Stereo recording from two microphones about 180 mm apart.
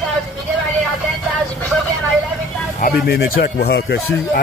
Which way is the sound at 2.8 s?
60° left (ahead or behind).